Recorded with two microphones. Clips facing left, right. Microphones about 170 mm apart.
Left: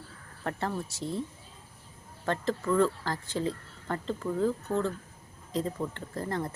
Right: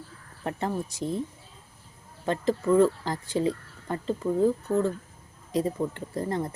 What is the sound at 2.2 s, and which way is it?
Speech, 15° right (ahead or behind).